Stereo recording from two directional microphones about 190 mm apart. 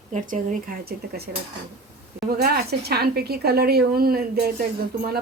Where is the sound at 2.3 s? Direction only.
55° right (ahead or behind).